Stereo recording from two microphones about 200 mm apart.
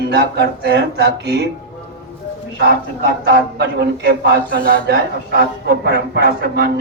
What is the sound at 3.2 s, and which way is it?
A man's voice, 55° right (ahead or behind).